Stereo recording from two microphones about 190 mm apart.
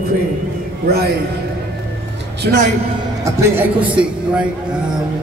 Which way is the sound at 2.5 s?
50° right (ahead or behind).